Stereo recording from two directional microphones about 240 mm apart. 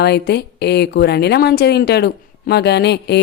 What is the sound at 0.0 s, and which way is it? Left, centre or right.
Speech, left.